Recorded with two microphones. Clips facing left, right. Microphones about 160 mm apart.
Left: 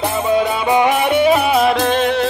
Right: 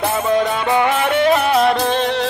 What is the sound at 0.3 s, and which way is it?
Music, 10° left (ahead or behind).